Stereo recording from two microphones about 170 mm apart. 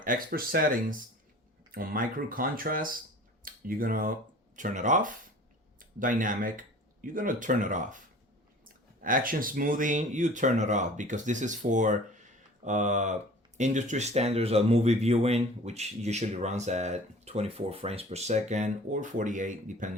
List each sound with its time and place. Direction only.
0.0 s speech: 55° right (ahead or behind)